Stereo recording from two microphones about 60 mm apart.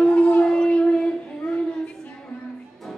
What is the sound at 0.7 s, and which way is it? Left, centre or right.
Child singing, centre.